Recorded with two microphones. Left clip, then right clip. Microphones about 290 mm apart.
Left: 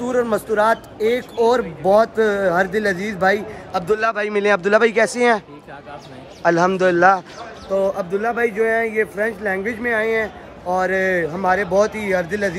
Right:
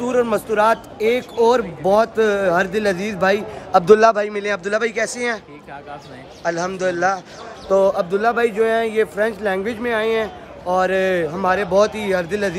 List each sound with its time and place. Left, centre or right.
0.0 s speech: centre
3.7 s a man's voice: right
4.1 s speech: centre
6.4 s speech: centre